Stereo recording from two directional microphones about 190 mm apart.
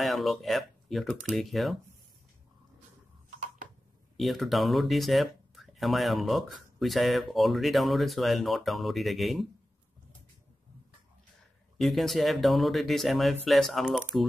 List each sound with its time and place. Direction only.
0.0 s speech: centre (ahead or behind)
3.3 s a sound: 45° right (ahead or behind)
4.2 s speech: centre (ahead or behind)
11.8 s speech: centre (ahead or behind)